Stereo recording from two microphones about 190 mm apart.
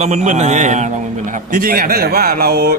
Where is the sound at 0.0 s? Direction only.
35° right (ahead or behind).